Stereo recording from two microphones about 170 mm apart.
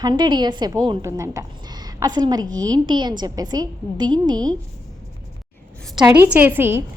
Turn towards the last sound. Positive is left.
turn(degrees=-15)  # may be behind; listen again after turning